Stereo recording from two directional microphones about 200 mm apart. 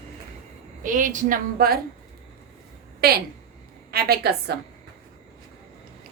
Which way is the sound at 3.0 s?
50° right (ahead or behind).